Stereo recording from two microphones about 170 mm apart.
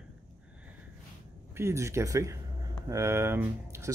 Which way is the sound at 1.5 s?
15° right (ahead or behind).